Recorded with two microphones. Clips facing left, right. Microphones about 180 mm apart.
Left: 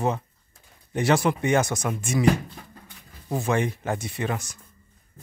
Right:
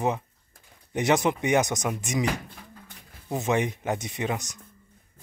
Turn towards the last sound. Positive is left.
turn(degrees=-20)  # may be behind; listen again after turning